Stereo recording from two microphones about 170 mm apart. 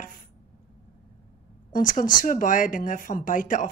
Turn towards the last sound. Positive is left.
turn(degrees=50)  # may be behind; listen again after turning